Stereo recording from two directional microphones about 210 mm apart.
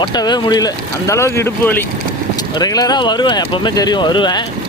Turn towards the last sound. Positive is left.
turn(degrees=20)  # may be behind; listen again after turning